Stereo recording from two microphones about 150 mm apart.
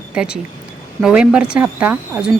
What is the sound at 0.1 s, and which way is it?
Speech, 5° right (ahead or behind).